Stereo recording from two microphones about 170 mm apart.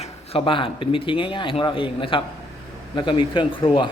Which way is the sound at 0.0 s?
30° left (ahead or behind).